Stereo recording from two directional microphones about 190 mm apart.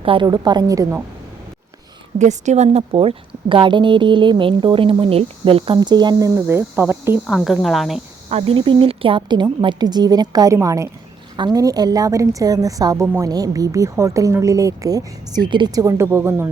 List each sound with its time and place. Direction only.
0.0 s a woman's voice: 25° right (ahead or behind)
2.1 s a woman's voice: 40° right (ahead or behind); by 7.3 s 10° right (ahead or behind)
7.3 s speech: centre (ahead or behind)
8.3 s a woman's voice: 30° right (ahead or behind); by 16.5 s 15° right (ahead or behind)